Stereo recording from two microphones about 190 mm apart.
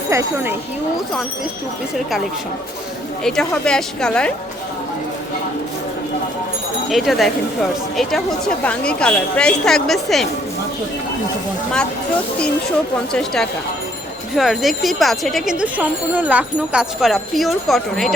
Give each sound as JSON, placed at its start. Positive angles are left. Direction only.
{"t": 0.1, "sound": "speech", "side_deg": -15}
{"t": 3.2, "sound": "a woman's voice", "side_deg": 5}
{"t": 6.9, "sound": "a woman's voice", "side_deg": 0}
{"t": 13.1, "sound": "a woman's voice", "side_deg": 5}